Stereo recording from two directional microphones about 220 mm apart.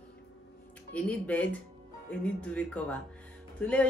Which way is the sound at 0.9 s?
5° left (ahead or behind).